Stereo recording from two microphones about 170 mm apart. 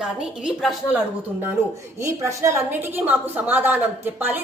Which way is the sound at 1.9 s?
15° right (ahead or behind).